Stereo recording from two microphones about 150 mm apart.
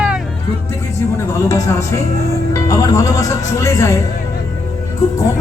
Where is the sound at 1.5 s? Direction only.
20° left (ahead or behind).